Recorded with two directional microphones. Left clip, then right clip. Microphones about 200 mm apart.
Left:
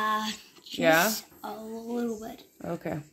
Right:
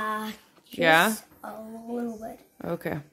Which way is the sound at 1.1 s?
15° right (ahead or behind).